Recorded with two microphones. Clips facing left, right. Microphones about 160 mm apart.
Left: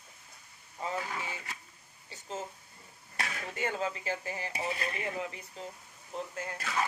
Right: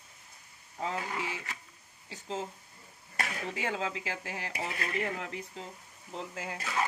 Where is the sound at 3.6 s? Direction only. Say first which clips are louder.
Left 2 dB; 90° right.